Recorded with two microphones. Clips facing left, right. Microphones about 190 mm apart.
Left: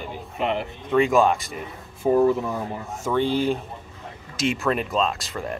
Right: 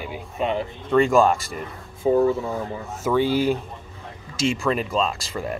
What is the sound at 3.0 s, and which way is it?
Speech, 5° right (ahead or behind).